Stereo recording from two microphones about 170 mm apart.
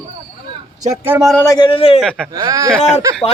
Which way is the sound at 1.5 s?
30° left (ahead or behind).